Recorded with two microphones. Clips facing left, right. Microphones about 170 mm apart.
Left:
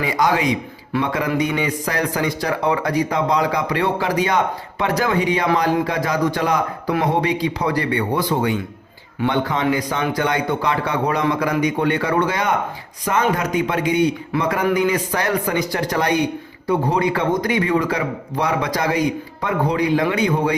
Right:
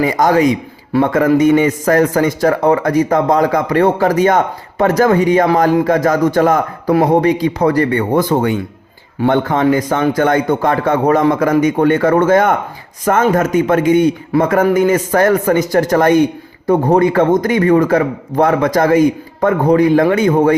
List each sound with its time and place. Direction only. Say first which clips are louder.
0.0 s a man's voice: right 7 dB; 45° right (ahead or behind)